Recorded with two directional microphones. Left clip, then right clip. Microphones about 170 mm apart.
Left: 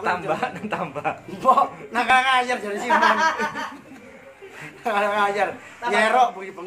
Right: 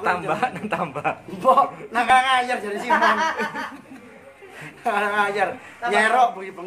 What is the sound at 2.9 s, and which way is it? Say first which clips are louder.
Speech: even; 45° left (ahead or behind).